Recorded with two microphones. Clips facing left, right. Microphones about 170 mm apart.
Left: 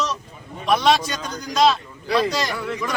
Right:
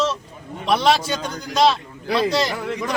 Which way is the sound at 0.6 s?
30° right (ahead or behind).